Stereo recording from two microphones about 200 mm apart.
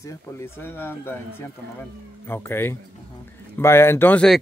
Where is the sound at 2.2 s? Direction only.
10° left (ahead or behind).